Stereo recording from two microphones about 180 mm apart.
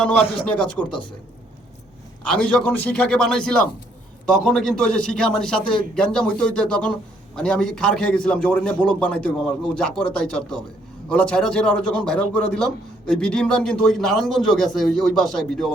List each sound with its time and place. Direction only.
0.0 s speech: 5° left (ahead or behind)
2.2 s a man's voice: 5° left (ahead or behind)